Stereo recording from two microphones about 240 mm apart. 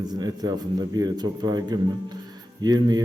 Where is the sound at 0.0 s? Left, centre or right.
Centre.